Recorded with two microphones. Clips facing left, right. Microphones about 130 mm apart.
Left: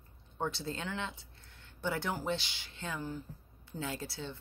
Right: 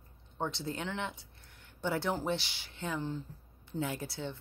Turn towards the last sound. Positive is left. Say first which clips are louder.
# right 2 dB
turn(degrees=-20)  # may be behind; listen again after turning